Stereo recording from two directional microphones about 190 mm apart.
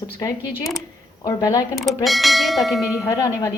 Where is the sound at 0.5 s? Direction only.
Centre (ahead or behind).